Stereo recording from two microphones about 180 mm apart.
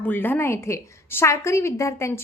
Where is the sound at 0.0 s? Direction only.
10° left (ahead or behind).